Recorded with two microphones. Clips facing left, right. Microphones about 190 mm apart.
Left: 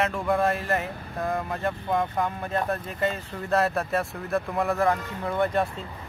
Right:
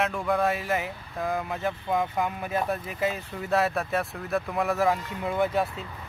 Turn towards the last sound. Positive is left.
turn(degrees=0)  # may be behind; listen again after turning